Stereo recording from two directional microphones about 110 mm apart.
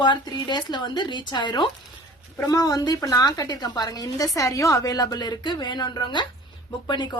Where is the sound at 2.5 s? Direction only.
35° left (ahead or behind).